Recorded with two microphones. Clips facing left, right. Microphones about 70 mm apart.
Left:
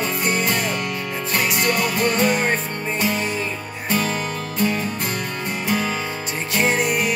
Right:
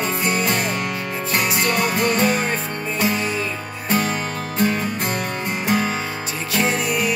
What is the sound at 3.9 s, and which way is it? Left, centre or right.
Music, right.